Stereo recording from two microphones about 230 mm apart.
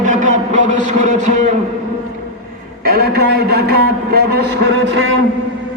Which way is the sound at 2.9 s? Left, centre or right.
Right.